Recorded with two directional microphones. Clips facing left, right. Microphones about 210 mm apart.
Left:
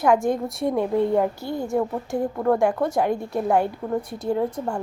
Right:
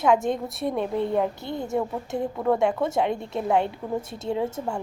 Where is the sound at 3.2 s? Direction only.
25° right (ahead or behind).